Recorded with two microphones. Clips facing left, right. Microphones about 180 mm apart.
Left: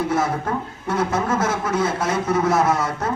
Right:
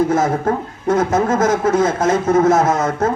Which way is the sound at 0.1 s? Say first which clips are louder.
Right 5 dB; 45° right (ahead or behind).